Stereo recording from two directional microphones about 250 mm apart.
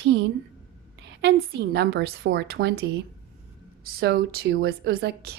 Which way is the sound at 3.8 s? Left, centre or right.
Right.